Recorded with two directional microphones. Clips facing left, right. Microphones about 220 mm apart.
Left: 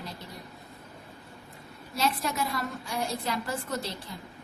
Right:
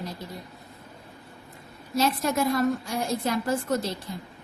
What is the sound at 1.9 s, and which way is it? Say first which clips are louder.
Speech: right 5 dB; 45° right (ahead or behind).